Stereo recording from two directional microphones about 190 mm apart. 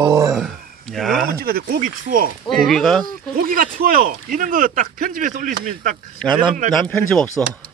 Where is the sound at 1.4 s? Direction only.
50° right (ahead or behind).